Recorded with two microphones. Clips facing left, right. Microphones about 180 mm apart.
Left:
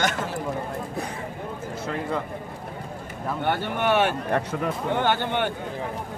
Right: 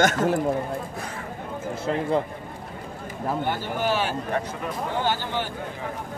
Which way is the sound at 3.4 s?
60° left (ahead or behind).